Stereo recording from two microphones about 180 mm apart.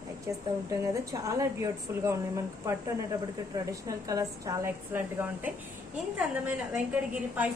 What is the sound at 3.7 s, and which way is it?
A woman's voice, 20° right (ahead or behind).